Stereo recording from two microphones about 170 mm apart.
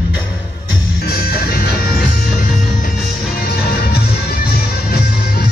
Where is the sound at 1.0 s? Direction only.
65° left (ahead or behind).